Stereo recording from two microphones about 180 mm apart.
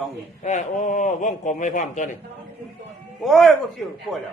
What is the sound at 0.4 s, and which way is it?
A man's voice, 45° left (ahead or behind).